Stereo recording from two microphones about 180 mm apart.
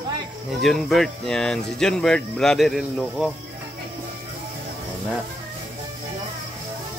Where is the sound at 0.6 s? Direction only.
Centre (ahead or behind).